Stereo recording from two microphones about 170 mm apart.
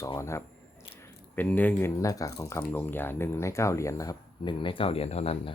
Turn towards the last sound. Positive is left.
turn(degrees=35)  # may be behind; listen again after turning